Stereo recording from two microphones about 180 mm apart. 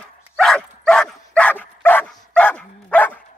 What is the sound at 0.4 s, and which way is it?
Dog, 5° left (ahead or behind).